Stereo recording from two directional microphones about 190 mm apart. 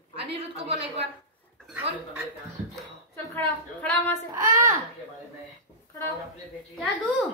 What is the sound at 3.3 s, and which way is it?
Speech, 10° left (ahead or behind).